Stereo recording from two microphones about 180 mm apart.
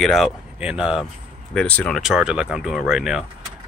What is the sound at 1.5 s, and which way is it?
Speech, 5° left (ahead or behind).